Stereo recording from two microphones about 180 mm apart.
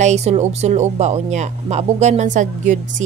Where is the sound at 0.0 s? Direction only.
40° right (ahead or behind).